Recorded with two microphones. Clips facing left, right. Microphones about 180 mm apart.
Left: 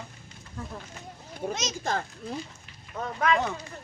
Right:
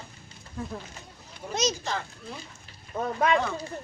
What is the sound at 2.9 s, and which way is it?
Speech, 30° right (ahead or behind).